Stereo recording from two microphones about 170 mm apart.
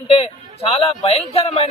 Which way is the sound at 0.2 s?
35° left (ahead or behind).